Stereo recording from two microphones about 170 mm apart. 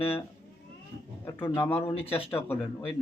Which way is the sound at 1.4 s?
15° left (ahead or behind).